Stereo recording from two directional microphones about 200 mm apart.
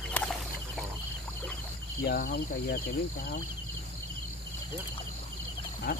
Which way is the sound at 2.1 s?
50° left (ahead or behind).